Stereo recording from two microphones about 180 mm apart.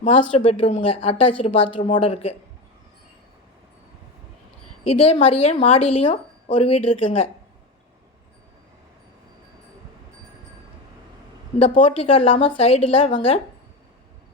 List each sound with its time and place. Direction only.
0.0 s speech: 35° left (ahead or behind)
4.8 s speech: 35° left (ahead or behind)
11.6 s speech: 35° left (ahead or behind)